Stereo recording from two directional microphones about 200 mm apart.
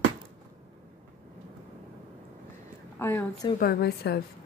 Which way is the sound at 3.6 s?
50° left (ahead or behind).